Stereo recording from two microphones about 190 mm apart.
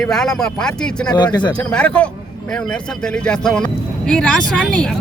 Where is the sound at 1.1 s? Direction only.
20° left (ahead or behind).